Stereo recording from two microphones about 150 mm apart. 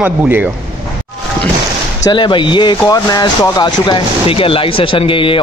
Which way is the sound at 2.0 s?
30° left (ahead or behind).